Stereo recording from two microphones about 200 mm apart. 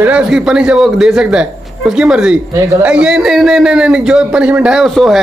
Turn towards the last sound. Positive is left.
turn(degrees=0)  # may be behind; listen again after turning